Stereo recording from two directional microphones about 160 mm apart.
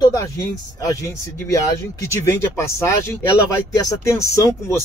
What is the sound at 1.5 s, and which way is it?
Speech, 20° left (ahead or behind).